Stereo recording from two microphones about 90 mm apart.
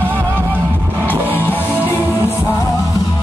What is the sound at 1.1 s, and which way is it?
Music, 20° left (ahead or behind).